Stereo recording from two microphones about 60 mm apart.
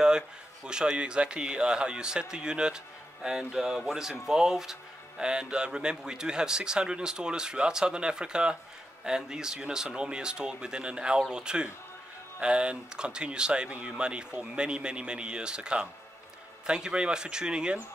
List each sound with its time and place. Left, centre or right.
0.7 s speech: centre